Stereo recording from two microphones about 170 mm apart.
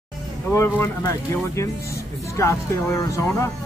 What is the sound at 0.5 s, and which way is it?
Speech, 15° left (ahead or behind).